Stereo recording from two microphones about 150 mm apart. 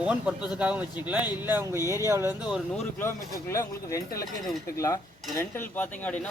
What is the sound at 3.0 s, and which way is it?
Speech, 20° left (ahead or behind).